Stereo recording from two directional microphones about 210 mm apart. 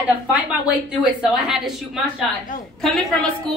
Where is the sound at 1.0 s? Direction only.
Centre (ahead or behind).